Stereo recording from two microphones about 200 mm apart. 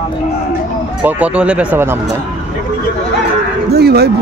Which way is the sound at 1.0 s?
5° right (ahead or behind).